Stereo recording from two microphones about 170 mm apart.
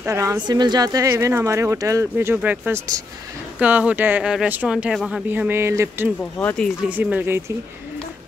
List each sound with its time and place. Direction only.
0.0 s speech: 15° right (ahead or behind)
6.3 s speech: 5° left (ahead or behind)
6.9 s speech: 10° right (ahead or behind)